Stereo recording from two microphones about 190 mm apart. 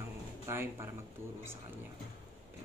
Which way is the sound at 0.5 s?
15° right (ahead or behind).